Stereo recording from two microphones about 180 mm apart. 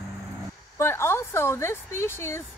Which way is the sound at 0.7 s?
15° left (ahead or behind).